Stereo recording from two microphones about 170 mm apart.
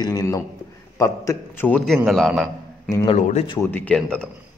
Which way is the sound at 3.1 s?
45° left (ahead or behind).